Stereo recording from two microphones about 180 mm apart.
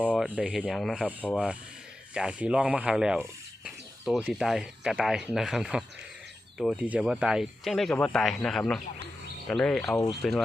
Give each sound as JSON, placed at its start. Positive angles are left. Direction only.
{"t": 0.0, "sound": "a sound", "side_deg": 10}
{"t": 0.3, "sound": "speech", "side_deg": -5}
{"t": 2.1, "sound": "speech", "side_deg": -5}